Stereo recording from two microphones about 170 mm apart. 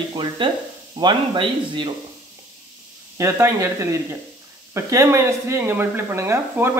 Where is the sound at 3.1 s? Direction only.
15° right (ahead or behind).